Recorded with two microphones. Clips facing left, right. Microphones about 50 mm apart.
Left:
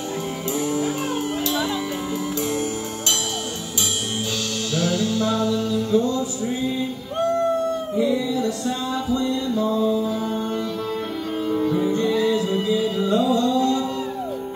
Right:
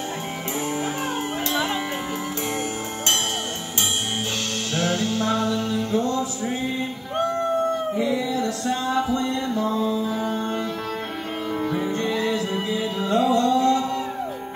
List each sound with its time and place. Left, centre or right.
4.7 s music: right
8.0 s music: right
11.5 s music: right
11.8 s music: right